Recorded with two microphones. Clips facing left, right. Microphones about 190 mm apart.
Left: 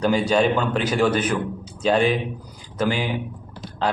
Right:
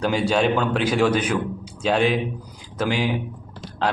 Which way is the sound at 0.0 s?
10° right (ahead or behind).